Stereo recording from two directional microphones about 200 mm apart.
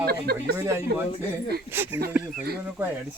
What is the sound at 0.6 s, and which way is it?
Speech, 15° right (ahead or behind).